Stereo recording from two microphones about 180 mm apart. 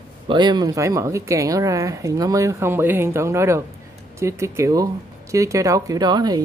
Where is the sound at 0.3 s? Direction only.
25° right (ahead or behind).